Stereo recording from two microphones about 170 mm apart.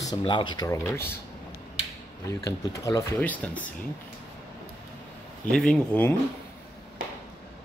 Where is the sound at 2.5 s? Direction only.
20° left (ahead or behind).